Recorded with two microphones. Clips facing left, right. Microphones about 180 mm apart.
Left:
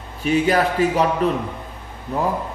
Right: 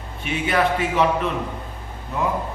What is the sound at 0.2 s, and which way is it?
A man's voice, 40° left (ahead or behind).